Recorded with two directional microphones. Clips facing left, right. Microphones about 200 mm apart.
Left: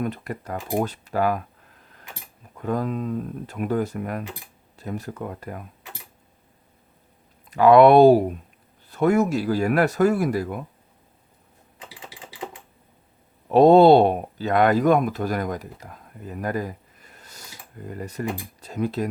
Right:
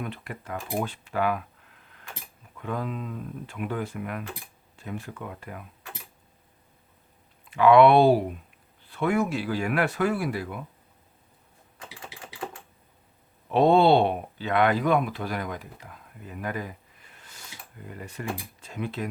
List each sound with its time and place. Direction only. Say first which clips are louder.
0.0 s speech: left 7 dB; 40° left (ahead or behind)
2.6 s speech: left 6 dB; 40° left (ahead or behind)
7.5 s speech: left 4 dB; 40° left (ahead or behind)
11.8 s typing: left 1 dB; 20° left (ahead or behind)
13.5 s speech: left 6 dB; 40° left (ahead or behind)